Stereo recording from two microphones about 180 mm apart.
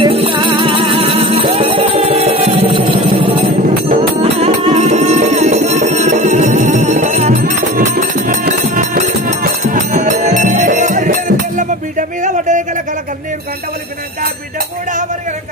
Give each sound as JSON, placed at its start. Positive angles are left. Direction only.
{"t": 0.0, "sound": "music", "side_deg": -30}